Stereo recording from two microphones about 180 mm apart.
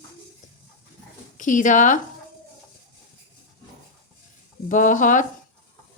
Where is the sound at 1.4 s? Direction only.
45° left (ahead or behind).